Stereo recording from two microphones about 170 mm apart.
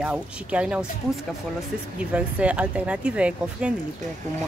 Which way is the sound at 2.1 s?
5° right (ahead or behind).